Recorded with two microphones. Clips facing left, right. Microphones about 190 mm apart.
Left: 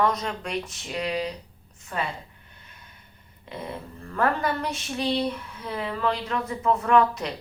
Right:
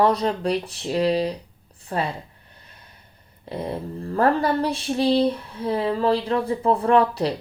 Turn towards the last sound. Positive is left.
turn(degrees=-35)  # may be behind; listen again after turning